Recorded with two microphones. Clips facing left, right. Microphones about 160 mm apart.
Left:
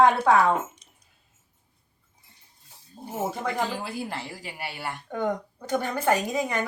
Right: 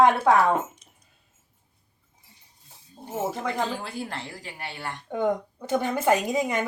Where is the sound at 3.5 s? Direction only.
5° left (ahead or behind).